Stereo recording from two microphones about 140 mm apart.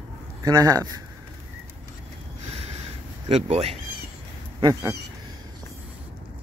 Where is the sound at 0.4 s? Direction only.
25° right (ahead or behind).